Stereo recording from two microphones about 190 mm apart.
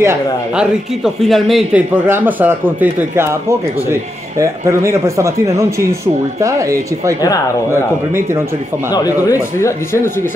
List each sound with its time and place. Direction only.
0.0 s speech: 15° right (ahead or behind)
1.0 s speech: centre (ahead or behind)
2.0 s speech: 10° right (ahead or behind)
8.9 s speech: 20° left (ahead or behind)